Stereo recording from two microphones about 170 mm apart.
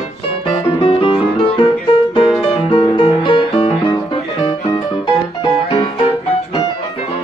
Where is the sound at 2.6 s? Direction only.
30° left (ahead or behind).